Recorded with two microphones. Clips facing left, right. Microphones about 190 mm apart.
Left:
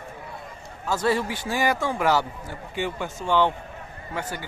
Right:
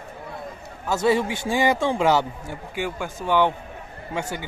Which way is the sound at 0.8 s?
20° right (ahead or behind).